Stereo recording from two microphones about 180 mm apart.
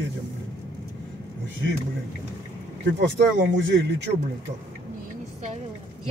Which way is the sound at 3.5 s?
75° right (ahead or behind).